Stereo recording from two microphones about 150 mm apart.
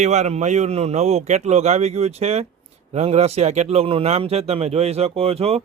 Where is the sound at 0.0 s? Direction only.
50° right (ahead or behind).